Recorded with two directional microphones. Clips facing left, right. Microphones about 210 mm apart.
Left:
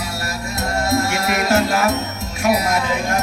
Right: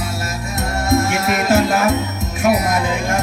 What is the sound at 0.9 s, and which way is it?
Music, 20° right (ahead or behind).